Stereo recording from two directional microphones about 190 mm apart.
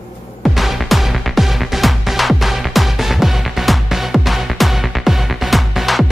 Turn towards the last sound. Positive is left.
turn(degrees=0)  # may be behind; listen again after turning